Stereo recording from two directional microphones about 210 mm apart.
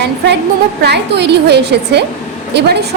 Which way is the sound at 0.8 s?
55° right (ahead or behind).